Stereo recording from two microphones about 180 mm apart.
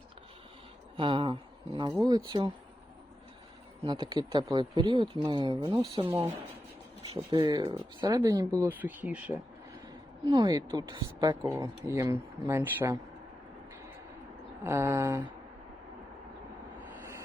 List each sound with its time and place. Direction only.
0.9 s a sound: 30° right (ahead or behind)
2.0 s speech: 25° right (ahead or behind)
3.8 s speech: 25° right (ahead or behind); by 9.4 s 10° right (ahead or behind)
10.2 s speech: 20° right (ahead or behind)
14.6 s speech: 15° right (ahead or behind)
16.9 s a sound: 15° right (ahead or behind)